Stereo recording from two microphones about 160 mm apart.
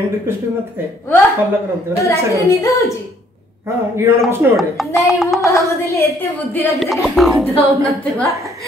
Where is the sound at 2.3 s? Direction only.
20° left (ahead or behind).